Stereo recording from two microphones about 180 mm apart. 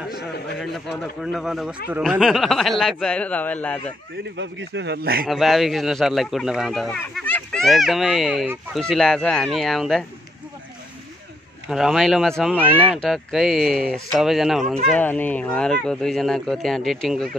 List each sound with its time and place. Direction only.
0.9 s speech: centre (ahead or behind)
4.4 s speech: 80° right; by 5.2 s 60° right (ahead or behind)
5.2 s speech: centre (ahead or behind)
11.7 s speech: centre (ahead or behind)
12.6 s speech: 10° right (ahead or behind)
14.9 s speech: 10° left (ahead or behind)